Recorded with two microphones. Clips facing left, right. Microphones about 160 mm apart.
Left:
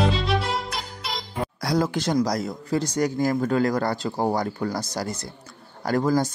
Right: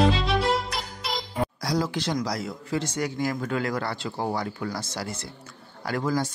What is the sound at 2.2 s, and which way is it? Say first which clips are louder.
Speech: left 6 dB; 40° left (ahead or behind).